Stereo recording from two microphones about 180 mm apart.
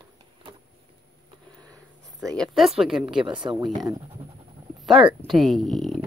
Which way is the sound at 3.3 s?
25° right (ahead or behind).